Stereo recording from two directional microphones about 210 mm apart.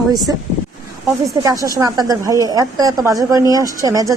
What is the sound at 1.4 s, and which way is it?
A woman's voice, 15° right (ahead or behind).